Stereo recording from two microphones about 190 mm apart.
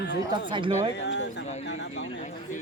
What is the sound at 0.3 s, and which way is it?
Speech, 25° right (ahead or behind).